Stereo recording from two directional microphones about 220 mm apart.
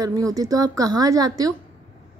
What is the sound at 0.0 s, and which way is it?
Speech, 15° right (ahead or behind).